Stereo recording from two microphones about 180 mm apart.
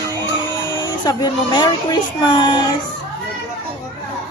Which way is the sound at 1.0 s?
25° left (ahead or behind).